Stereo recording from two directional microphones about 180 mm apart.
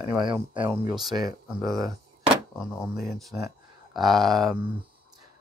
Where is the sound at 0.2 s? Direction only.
25° right (ahead or behind).